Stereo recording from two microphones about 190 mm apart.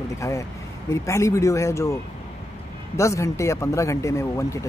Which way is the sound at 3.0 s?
15° left (ahead or behind).